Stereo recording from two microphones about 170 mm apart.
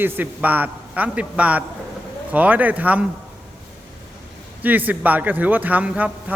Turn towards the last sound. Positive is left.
turn(degrees=-10)  # may be behind; listen again after turning